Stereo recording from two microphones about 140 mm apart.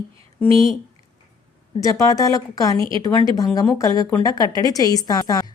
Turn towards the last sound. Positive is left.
turn(degrees=25)  # may be behind; listen again after turning